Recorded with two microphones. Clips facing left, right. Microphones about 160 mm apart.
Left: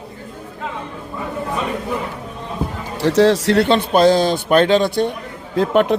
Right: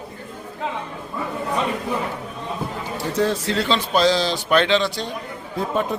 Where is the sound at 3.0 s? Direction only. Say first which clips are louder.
Left 9 dB; 85° left; by 5.1 s 55° left (ahead or behind).